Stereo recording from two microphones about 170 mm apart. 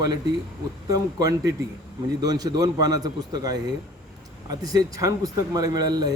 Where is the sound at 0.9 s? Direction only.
20° right (ahead or behind).